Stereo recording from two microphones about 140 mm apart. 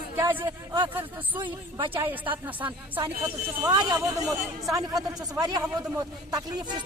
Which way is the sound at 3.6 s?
30° right (ahead or behind).